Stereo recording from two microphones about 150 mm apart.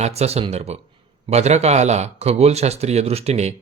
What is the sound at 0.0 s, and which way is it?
A man's voice, 45° right (ahead or behind).